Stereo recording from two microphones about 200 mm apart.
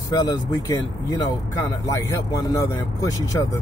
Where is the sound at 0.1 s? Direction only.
20° left (ahead or behind).